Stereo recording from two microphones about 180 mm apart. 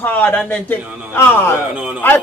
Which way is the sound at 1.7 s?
10° right (ahead or behind).